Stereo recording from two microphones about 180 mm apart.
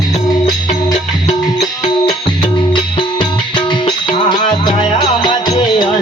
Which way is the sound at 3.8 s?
25° left (ahead or behind).